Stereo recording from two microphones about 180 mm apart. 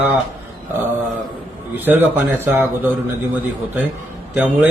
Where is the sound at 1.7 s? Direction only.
10° right (ahead or behind).